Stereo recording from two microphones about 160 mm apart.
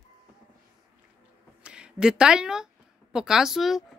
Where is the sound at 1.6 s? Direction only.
5° right (ahead or behind).